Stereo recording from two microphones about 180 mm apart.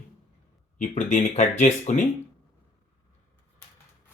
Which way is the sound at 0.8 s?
40° left (ahead or behind).